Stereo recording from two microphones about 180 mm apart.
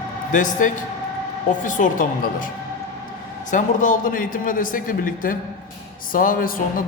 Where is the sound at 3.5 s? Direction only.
45° left (ahead or behind).